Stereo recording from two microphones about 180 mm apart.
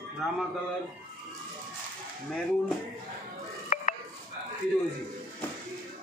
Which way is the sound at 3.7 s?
45° left (ahead or behind).